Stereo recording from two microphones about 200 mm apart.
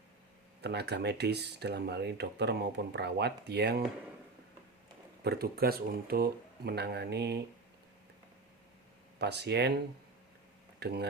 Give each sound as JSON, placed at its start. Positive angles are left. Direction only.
{"t": 0.6, "sound": "speech", "side_deg": -55}
{"t": 5.2, "sound": "speech", "side_deg": -50}
{"t": 9.1, "sound": "speech", "side_deg": -55}
{"t": 10.8, "sound": "speech", "side_deg": -55}